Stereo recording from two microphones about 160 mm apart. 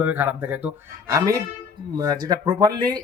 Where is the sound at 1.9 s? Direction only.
25° right (ahead or behind).